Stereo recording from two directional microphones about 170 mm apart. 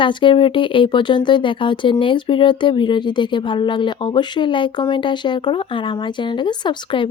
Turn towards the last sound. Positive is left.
turn(degrees=30)  # may be behind; listen again after turning